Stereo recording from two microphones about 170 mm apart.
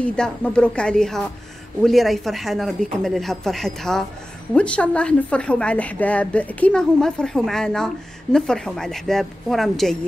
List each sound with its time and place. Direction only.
0.0 s a woman's voice: 5° left (ahead or behind)